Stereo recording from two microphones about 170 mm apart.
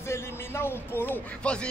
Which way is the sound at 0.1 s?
15° left (ahead or behind).